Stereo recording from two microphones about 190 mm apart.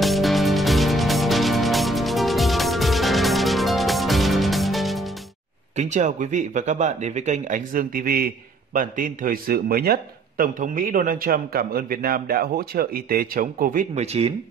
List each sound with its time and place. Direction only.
0.0 s music: centre (ahead or behind)
5.8 s a man's voice: 40° right (ahead or behind)